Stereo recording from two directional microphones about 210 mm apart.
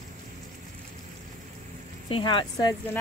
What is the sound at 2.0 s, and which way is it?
Speech, 25° left (ahead or behind).